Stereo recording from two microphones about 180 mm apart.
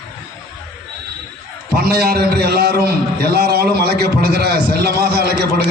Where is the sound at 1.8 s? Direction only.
60° right (ahead or behind).